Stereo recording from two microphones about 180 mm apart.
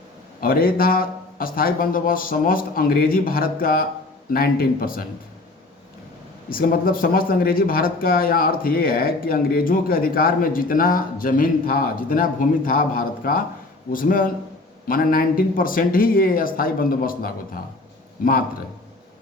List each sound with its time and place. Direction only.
0.4 s a man's voice: 55° left (ahead or behind)
6.5 s speech: 55° left (ahead or behind)